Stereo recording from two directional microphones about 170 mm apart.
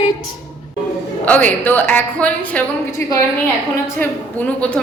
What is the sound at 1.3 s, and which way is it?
A woman's voice, 10° left (ahead or behind).